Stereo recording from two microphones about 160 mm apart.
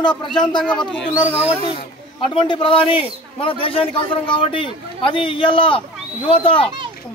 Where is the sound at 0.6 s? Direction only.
5° left (ahead or behind).